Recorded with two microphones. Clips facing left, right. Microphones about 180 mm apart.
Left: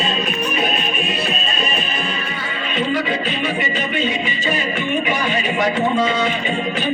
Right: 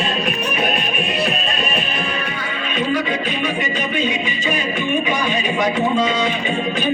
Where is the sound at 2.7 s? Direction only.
15° right (ahead or behind).